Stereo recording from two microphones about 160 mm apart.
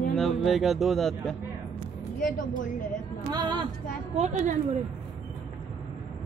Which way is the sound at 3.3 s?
30° right (ahead or behind).